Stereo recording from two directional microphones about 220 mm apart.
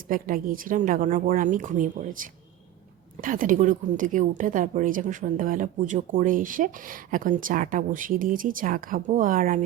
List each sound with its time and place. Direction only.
0.1 s a woman's voice: 40° right (ahead or behind)